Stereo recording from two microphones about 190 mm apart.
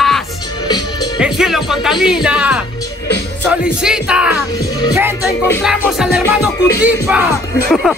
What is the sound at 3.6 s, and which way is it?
Speech, 5° right (ahead or behind).